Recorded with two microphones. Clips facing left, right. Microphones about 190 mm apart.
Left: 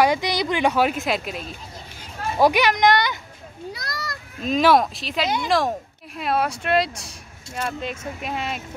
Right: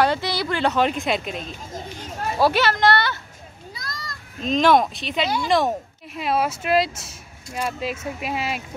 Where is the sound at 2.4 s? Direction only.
15° left (ahead or behind).